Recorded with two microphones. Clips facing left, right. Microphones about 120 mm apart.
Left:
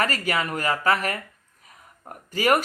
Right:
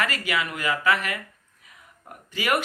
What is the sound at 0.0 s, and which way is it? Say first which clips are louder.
Speech: left 2 dB; 40° left (ahead or behind).